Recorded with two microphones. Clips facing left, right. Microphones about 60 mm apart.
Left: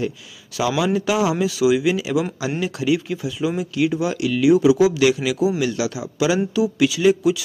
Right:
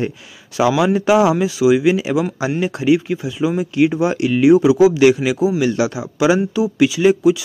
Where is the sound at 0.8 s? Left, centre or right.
Right.